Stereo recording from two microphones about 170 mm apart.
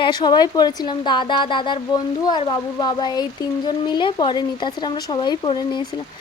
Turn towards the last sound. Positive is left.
turn(degrees=25)  # may be behind; listen again after turning